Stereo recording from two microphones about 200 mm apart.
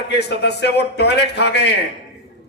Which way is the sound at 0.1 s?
55° left (ahead or behind).